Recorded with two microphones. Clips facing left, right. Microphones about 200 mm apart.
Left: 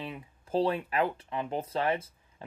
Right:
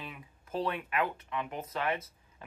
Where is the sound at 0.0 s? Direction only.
30° left (ahead or behind).